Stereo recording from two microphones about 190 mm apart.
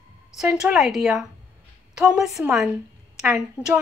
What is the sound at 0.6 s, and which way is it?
Speech, centre (ahead or behind).